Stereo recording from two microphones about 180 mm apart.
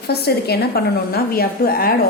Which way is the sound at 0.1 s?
60° left (ahead or behind).